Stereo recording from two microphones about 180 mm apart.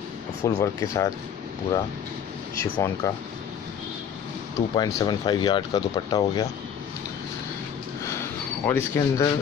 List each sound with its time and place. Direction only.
0.4 s speech: 15° left (ahead or behind)
2.6 s speech: 15° left (ahead or behind)
4.7 s speech: 20° left (ahead or behind)
8.2 s a sound: 15° left (ahead or behind)